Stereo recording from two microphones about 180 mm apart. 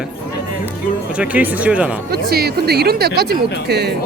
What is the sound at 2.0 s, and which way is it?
Speech, 60° right (ahead or behind).